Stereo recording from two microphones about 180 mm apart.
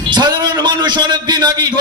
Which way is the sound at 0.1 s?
25° right (ahead or behind).